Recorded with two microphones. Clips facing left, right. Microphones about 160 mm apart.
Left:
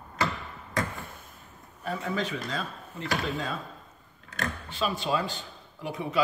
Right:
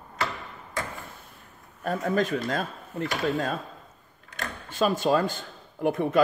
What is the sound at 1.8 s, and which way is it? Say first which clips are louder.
A man's voice: right 5 dB; 50° right (ahead or behind).